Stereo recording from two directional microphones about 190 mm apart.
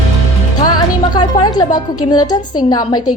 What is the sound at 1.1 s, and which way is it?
A woman's voice, 25° left (ahead or behind).